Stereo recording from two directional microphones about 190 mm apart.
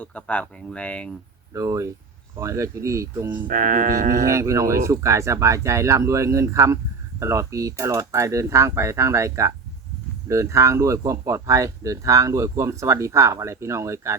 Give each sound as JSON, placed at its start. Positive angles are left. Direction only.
{"t": 0.0, "sound": "speech", "side_deg": 5}
{"t": 1.5, "sound": "speech", "side_deg": -15}
{"t": 3.4, "sound": "speech", "side_deg": -45}
{"t": 4.3, "sound": "speech", "side_deg": -15}